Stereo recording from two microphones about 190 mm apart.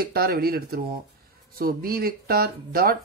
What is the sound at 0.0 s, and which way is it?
Speech, 55° right (ahead or behind).